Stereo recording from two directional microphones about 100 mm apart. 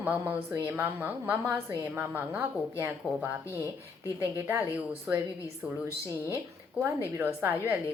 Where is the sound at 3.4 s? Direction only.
30° left (ahead or behind).